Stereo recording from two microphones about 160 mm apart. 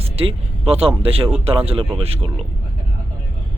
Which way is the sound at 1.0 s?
35° right (ahead or behind).